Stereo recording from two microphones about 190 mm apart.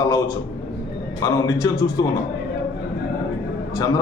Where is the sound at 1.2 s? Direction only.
20° left (ahead or behind).